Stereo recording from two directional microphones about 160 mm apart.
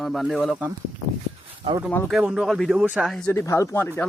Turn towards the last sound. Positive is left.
turn(degrees=15)  # may be behind; listen again after turning